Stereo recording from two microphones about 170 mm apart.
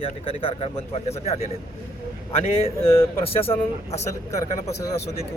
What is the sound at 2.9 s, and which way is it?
Speech, 35° left (ahead or behind).